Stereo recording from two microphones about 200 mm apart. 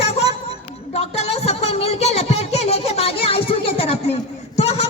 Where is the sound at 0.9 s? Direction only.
30° left (ahead or behind).